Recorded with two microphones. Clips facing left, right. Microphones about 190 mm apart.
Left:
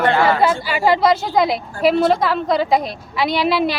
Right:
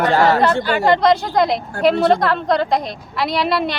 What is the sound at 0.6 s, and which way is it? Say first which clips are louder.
Speech: right 1 dB; 5° left (ahead or behind).